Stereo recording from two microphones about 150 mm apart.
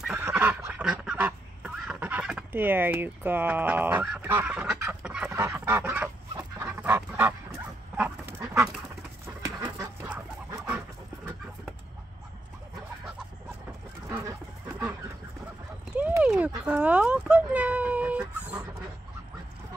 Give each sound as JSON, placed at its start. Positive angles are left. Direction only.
{"t": 0.0, "sound": "goose", "side_deg": -10}
{"t": 8.4, "sound": "duck", "side_deg": -20}
{"t": 9.6, "sound": "chicken", "side_deg": -10}
{"t": 16.0, "sound": "a sound", "side_deg": -10}